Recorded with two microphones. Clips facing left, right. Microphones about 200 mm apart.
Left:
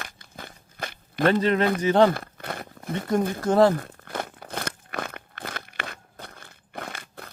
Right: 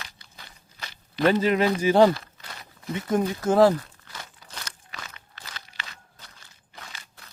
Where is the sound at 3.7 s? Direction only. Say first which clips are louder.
Left 7 dB; 55° left (ahead or behind).